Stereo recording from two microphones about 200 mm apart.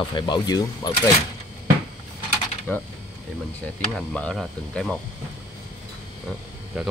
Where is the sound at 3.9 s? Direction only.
5° left (ahead or behind).